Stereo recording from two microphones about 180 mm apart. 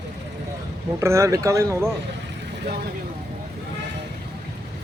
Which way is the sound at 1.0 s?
15° right (ahead or behind).